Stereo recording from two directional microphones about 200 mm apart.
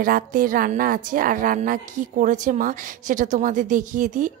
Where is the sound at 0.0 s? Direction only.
45° right (ahead or behind).